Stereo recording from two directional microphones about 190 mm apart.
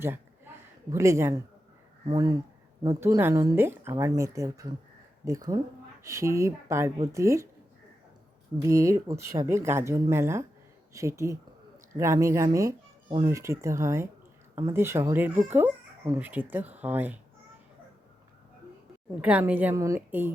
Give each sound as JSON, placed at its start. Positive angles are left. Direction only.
{"t": 0.9, "sound": "speech", "side_deg": -15}
{"t": 2.8, "sound": "speech", "side_deg": -15}
{"t": 8.6, "sound": "speech", "side_deg": -15}
{"t": 13.1, "sound": "speech", "side_deg": -25}
{"t": 13.3, "sound": "speech", "side_deg": -15}
{"t": 19.2, "sound": "speech", "side_deg": -10}